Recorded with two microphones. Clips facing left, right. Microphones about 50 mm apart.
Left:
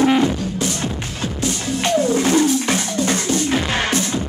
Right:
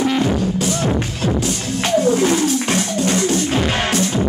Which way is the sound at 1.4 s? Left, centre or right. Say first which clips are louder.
Even; centre.